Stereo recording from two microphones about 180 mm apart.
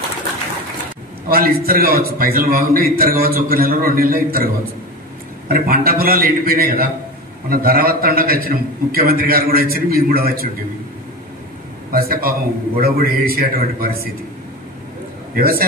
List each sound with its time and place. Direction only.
1.3 s a man's voice: 55° right (ahead or behind)
5.5 s a man's voice: 55° right (ahead or behind)
11.9 s a man's voice: 55° right (ahead or behind)
15.3 s a man's voice: 55° right (ahead or behind)